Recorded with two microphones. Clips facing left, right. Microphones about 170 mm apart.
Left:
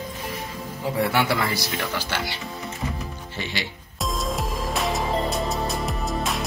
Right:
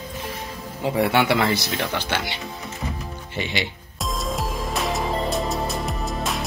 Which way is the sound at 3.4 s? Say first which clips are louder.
Right 4 dB; 20° right (ahead or behind).